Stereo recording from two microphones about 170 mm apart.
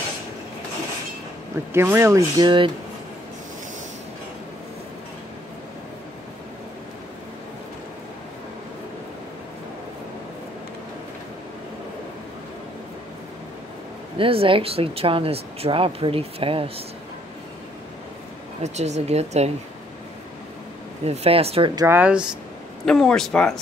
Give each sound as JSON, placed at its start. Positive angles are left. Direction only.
{"t": 1.7, "sound": "speech", "side_deg": -15}
{"t": 14.1, "sound": "speech", "side_deg": -30}
{"t": 18.6, "sound": "speech", "side_deg": -40}
{"t": 21.0, "sound": "speech", "side_deg": -40}
{"t": 21.7, "sound": "speech", "side_deg": -15}
{"t": 22.8, "sound": "speech", "side_deg": 5}